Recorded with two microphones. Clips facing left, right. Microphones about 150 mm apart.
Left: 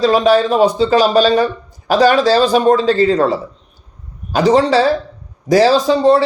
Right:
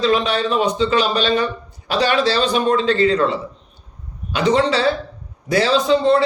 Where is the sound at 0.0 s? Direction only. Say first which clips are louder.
Left 6 dB; 40° left (ahead or behind).